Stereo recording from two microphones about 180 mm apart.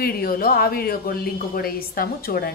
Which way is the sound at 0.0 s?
55° left (ahead or behind).